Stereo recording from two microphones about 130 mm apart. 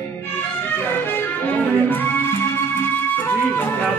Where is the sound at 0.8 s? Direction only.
15° left (ahead or behind).